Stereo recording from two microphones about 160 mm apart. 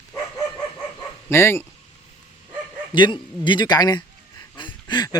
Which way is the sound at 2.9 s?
30° left (ahead or behind).